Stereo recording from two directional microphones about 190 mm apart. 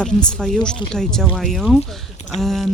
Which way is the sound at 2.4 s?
Centre (ahead or behind).